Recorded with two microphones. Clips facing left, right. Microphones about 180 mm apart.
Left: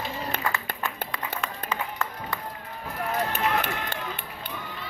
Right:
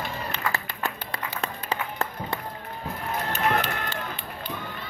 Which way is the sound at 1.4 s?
35° right (ahead or behind).